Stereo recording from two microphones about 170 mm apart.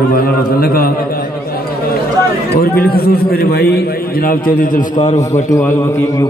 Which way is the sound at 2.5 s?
65° left (ahead or behind).